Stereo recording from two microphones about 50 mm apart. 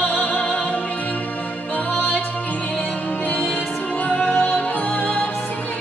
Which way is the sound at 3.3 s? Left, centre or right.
Centre.